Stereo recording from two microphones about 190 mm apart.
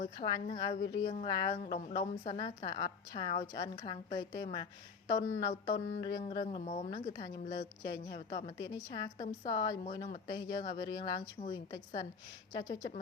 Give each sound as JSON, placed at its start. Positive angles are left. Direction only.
{"t": 0.0, "sound": "a woman's voice", "side_deg": 25}